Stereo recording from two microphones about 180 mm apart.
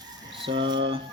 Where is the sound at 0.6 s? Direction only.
30° right (ahead or behind).